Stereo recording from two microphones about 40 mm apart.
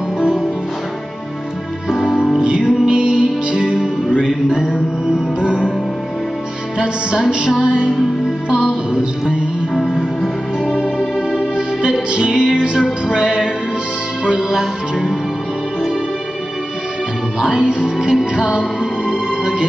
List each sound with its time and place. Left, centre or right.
2.3 s music: right
4.2 s music: centre
5.4 s music: right
6.8 s music: centre
9.8 s music: left
11.5 s music: centre
17.5 s music: right
17.8 s music: centre